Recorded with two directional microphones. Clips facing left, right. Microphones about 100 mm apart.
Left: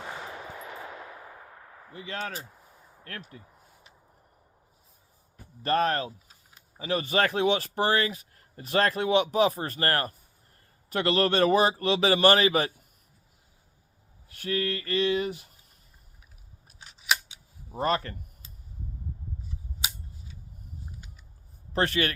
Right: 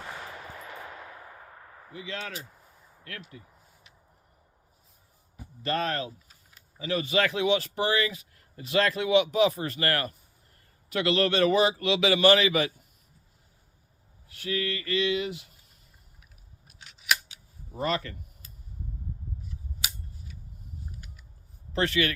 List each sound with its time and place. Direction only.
1.9 s speech: 40° left (ahead or behind)
5.6 s speech: 45° left (ahead or behind)
14.3 s speech: 45° left (ahead or behind)
16.8 s camera: 25° left (ahead or behind)
17.8 s speech: 45° left (ahead or behind)
19.5 s scissors: 30° left (ahead or behind)
21.7 s speech: 45° left (ahead or behind)